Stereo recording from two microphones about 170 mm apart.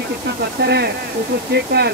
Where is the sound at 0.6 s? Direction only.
70° right (ahead or behind).